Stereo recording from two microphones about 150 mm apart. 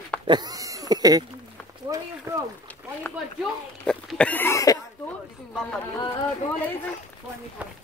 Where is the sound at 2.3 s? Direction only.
20° right (ahead or behind).